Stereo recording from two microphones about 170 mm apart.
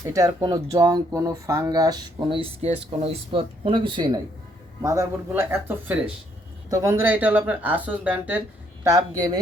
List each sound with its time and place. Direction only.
0.0 s speech: 20° right (ahead or behind)
8.8 s speech: 20° right (ahead or behind)